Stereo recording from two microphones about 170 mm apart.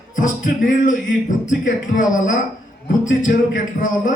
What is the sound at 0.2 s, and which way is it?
A man's voice, 50° left (ahead or behind).